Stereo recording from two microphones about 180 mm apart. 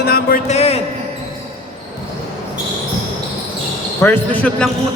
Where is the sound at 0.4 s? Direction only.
35° left (ahead or behind).